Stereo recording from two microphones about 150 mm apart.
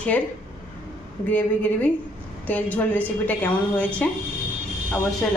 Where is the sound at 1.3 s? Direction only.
10° left (ahead or behind).